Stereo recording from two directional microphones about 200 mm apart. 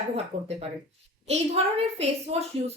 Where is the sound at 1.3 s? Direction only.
30° right (ahead or behind).